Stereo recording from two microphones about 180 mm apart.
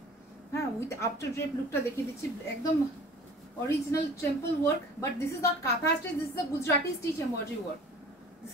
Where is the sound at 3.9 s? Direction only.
15° left (ahead or behind).